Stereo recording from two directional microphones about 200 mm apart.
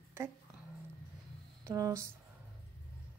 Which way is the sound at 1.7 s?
15° right (ahead or behind).